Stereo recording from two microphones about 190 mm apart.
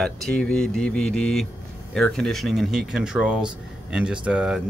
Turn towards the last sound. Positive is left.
turn(degrees=-5)  # may be behind; listen again after turning